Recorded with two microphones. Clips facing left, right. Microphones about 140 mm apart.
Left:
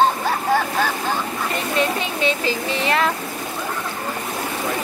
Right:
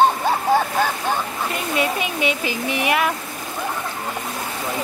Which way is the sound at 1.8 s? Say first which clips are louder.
Even; 10° right (ahead or behind).